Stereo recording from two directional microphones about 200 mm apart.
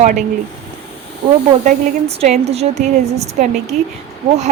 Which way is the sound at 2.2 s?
30° right (ahead or behind).